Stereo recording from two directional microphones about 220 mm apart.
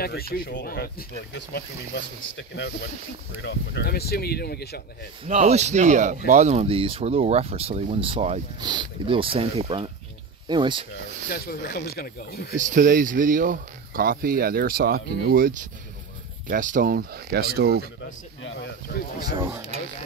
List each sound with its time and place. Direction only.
0.0 s speech: 45° left (ahead or behind)
3.4 s speech: 45° left (ahead or behind)
5.2 s speech: 30° right (ahead or behind)
11.2 s speech: 45° left (ahead or behind)
12.5 s speech: 35° right (ahead or behind)
18.4 s speech: 55° left (ahead or behind)
19.4 s speech: 10° right (ahead or behind)